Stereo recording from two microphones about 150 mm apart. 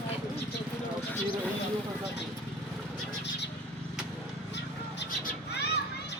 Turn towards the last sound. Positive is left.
turn(degrees=90)